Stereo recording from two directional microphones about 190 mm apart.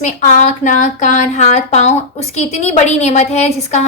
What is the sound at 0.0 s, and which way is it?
Speech, 40° left (ahead or behind).